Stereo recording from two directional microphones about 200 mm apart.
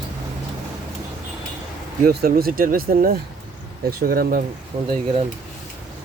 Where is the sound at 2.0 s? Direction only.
50° right (ahead or behind).